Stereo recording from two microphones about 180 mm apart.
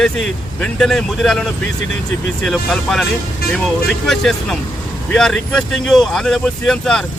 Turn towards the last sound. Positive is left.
turn(degrees=5)  # may be behind; listen again after turning